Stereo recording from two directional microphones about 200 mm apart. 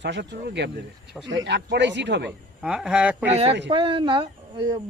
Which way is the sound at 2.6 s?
5° right (ahead or behind).